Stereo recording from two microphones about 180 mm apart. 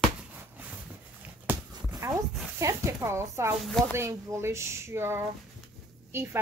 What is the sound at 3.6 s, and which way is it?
Speech, centre (ahead or behind).